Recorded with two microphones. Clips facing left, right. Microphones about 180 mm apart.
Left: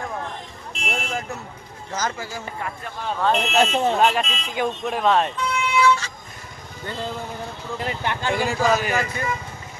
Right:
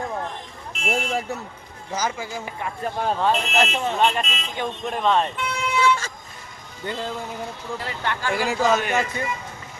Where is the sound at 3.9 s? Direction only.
5° left (ahead or behind).